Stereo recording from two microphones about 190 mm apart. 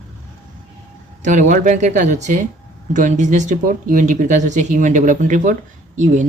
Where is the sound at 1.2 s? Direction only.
40° right (ahead or behind).